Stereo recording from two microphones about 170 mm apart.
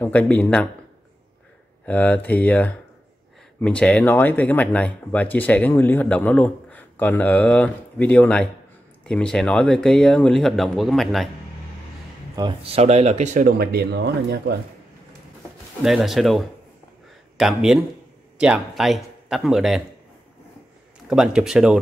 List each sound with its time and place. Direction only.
0.0 s speech: 10° left (ahead or behind)
1.9 s speech: 10° left (ahead or behind)
12.4 s speech: 30° right (ahead or behind)
13.6 s speech: 70° right (ahead or behind)
15.8 s speech: centre (ahead or behind)
21.1 s speech: 5° right (ahead or behind)